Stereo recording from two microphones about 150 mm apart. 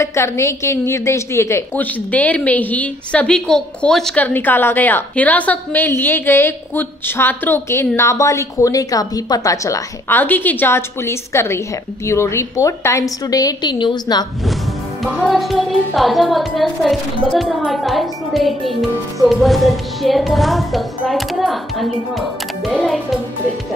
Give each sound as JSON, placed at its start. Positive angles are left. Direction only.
{"t": 0.0, "sound": "a woman's voice", "side_deg": 20}
{"t": 15.0, "sound": "speech", "side_deg": 0}